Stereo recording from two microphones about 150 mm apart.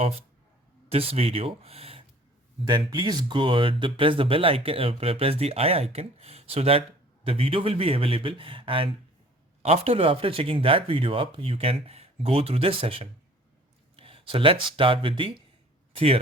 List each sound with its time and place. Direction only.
0.9 s speech: 40° right (ahead or behind)
2.6 s speech: 30° right (ahead or behind)